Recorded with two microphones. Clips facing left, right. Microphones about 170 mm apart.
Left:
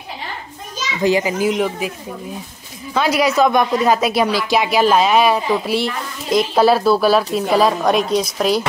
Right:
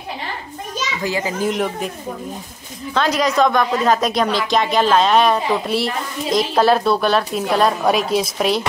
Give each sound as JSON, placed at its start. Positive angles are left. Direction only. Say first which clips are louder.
{"t": 1.0, "sound": "a child's voice", "louder": "left 7 dB", "side_deg": 20}
{"t": 1.4, "sound": "a woman's voice", "louder": "left 2 dB", "side_deg": 5}
{"t": 2.9, "sound": "a woman's voice", "louder": "left 2 dB", "side_deg": 10}